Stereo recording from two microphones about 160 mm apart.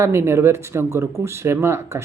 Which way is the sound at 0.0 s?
15° right (ahead or behind).